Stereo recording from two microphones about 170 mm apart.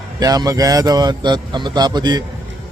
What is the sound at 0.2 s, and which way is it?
Speech, 20° right (ahead or behind).